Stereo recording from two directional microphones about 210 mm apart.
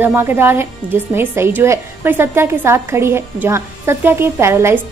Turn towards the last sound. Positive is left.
turn(degrees=-10)  # may be behind; listen again after turning